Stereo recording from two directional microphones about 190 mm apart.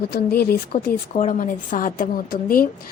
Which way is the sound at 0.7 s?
35° left (ahead or behind).